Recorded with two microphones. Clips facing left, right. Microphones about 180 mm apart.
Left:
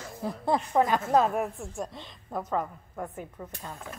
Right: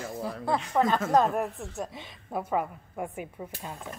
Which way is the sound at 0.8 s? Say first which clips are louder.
Right 1 dB; 10° left (ahead or behind).